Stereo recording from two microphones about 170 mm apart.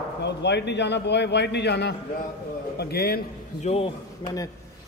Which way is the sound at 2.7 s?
70° left (ahead or behind).